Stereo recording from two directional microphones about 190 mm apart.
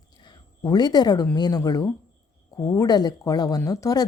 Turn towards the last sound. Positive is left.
turn(degrees=20)  # may be behind; listen again after turning